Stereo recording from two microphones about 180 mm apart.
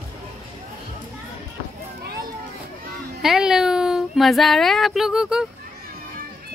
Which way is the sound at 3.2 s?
Centre (ahead or behind).